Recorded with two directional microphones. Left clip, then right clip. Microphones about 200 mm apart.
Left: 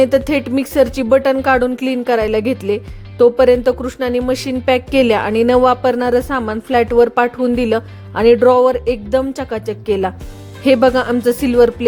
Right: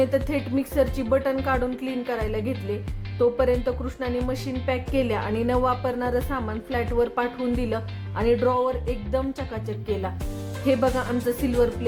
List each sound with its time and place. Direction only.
0.0 s a woman's voice: 45° left (ahead or behind)